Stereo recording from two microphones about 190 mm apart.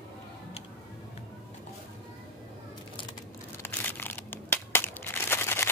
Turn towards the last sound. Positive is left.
turn(degrees=10)  # may be behind; listen again after turning